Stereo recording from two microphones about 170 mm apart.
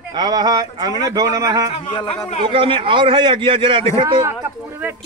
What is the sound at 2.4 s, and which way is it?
A man's voice, 30° right (ahead or behind).